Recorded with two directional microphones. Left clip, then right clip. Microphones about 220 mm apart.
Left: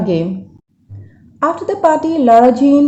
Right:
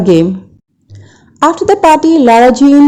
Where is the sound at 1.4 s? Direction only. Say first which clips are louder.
Right 6 dB; 45° right (ahead or behind).